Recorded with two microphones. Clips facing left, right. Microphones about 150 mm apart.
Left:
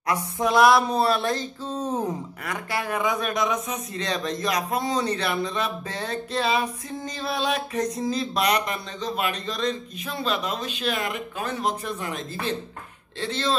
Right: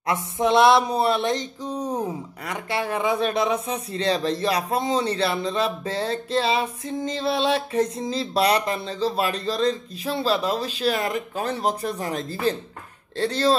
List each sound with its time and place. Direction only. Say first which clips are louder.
0.0 s a sound: right 2 dB; 25° right (ahead or behind)
0.8 s speech: right 1 dB; 20° right (ahead or behind)
2.4 s speech: right 3 dB; 25° right (ahead or behind)